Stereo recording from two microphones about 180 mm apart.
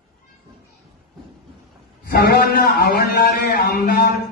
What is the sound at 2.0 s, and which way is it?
A man's voice, 60° left (ahead or behind).